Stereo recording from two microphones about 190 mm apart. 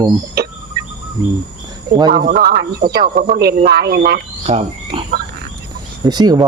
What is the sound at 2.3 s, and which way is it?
Speech, 55° right (ahead or behind).